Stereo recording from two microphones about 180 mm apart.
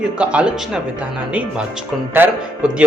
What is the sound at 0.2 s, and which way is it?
A man's voice, 5° right (ahead or behind).